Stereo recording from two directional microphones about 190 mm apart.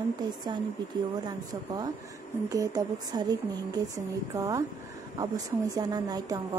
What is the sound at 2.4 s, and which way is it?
Speech, 20° right (ahead or behind).